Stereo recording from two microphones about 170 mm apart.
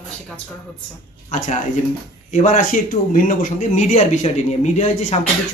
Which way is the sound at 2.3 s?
45° left (ahead or behind).